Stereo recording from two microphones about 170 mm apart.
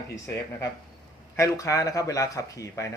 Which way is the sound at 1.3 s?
15° left (ahead or behind).